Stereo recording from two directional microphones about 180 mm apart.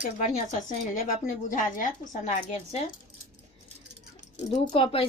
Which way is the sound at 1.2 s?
45° left (ahead or behind).